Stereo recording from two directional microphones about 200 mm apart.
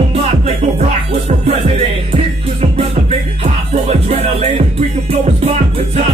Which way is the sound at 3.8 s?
30° right (ahead or behind).